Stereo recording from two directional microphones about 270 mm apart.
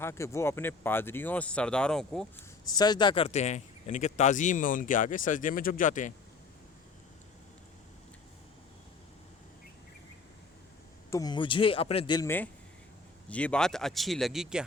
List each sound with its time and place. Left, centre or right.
0.0 s speech: centre
2.6 s speech: centre
11.1 s speech: centre